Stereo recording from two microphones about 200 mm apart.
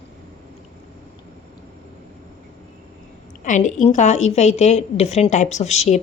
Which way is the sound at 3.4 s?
40° left (ahead or behind).